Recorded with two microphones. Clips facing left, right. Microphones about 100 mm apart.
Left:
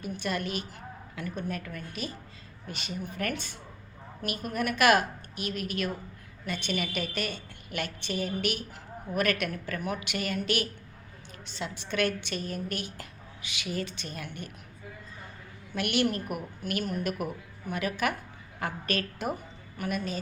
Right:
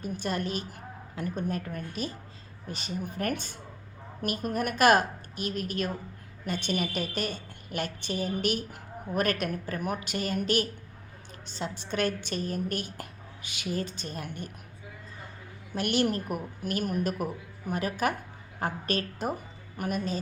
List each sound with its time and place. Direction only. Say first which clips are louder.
0.2 s a woman's voice: even; 40° right (ahead or behind)
15.7 s a woman's voice: right 1 dB; 40° right (ahead or behind)